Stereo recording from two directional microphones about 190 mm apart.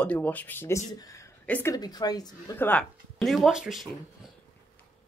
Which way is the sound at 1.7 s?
20° left (ahead or behind).